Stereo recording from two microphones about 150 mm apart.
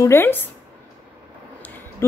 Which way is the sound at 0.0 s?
15° left (ahead or behind).